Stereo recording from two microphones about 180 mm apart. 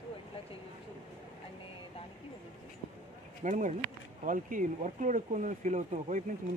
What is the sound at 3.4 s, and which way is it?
Speech, 45° right (ahead or behind).